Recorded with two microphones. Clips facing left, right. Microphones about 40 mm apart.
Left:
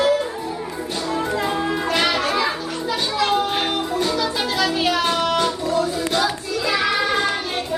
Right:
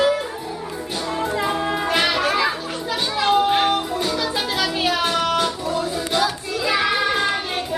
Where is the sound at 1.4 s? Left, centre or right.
Centre.